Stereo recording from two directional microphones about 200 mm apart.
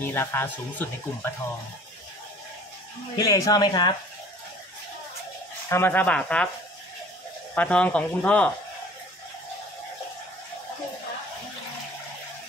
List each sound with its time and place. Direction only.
0.0 s speech: 10° left (ahead or behind)
3.2 s speech: 15° left (ahead or behind)
5.7 s speech: 10° left (ahead or behind)
7.5 s speech: 5° left (ahead or behind)